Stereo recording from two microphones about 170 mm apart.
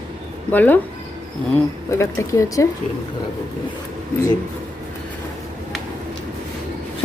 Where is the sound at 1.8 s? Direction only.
15° left (ahead or behind).